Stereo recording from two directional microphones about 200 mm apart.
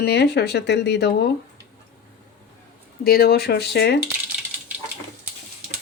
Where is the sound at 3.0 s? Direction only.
50° left (ahead or behind).